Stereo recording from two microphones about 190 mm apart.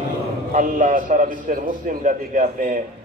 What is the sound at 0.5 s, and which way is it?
Mantra, 45° right (ahead or behind).